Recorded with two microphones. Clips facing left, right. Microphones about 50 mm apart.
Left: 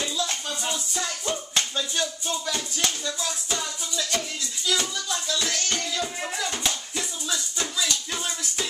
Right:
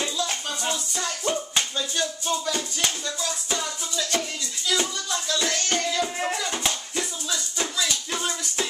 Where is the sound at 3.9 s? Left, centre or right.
Centre.